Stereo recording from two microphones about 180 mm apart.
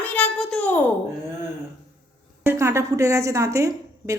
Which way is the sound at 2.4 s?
15° right (ahead or behind).